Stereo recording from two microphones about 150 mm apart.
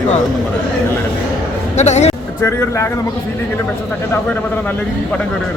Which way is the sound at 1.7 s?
50° left (ahead or behind).